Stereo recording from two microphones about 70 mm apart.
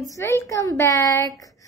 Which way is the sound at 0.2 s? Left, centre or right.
Left.